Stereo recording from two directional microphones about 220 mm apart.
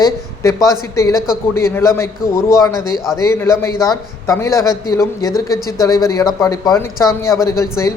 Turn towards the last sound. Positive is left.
turn(degrees=15)  # may be behind; listen again after turning